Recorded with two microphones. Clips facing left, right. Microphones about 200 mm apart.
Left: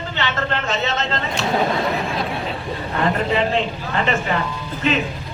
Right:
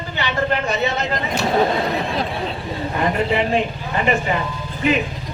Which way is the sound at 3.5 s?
15° right (ahead or behind).